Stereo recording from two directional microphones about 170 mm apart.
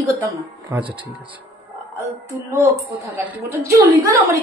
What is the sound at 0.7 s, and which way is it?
Mantra, 15° right (ahead or behind).